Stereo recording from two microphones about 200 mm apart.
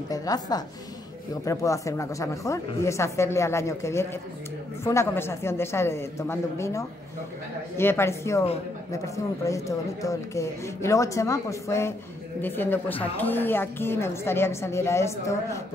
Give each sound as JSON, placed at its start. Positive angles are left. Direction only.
{"t": 0.1, "sound": "a woman's voice", "side_deg": 20}